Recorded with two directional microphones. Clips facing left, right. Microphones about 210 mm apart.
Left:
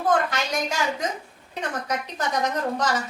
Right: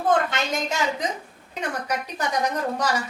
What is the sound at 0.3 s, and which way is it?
Speech, 25° right (ahead or behind).